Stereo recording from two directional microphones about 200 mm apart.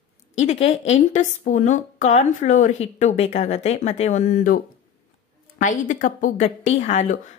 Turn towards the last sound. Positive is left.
turn(degrees=35)  # may be behind; listen again after turning